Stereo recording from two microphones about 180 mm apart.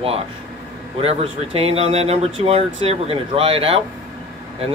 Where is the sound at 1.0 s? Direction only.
35° right (ahead or behind).